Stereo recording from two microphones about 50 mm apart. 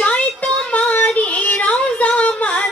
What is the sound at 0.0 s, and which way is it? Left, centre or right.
Child singing, left.